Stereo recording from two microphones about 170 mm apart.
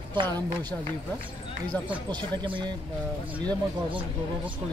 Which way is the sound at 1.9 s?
25° right (ahead or behind).